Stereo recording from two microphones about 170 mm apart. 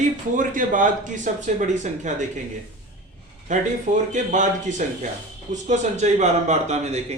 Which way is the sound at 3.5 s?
45° right (ahead or behind).